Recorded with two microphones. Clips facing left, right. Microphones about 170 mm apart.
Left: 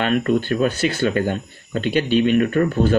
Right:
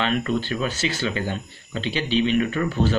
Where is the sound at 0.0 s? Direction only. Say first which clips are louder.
Left 5 dB; 50° left (ahead or behind).